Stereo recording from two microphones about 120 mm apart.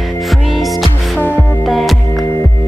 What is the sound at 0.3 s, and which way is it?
Music, centre (ahead or behind).